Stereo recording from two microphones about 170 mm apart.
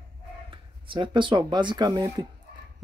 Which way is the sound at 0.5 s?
30° right (ahead or behind).